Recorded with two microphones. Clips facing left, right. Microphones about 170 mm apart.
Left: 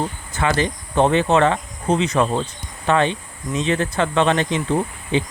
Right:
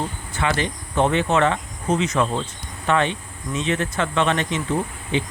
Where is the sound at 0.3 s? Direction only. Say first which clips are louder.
Left 3 dB; 40° left (ahead or behind).